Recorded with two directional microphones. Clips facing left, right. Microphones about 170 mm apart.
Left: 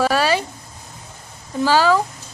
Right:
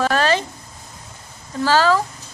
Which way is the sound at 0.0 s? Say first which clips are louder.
Left 1 dB; 10° left (ahead or behind).